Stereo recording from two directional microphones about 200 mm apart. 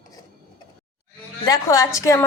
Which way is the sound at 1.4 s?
15° left (ahead or behind).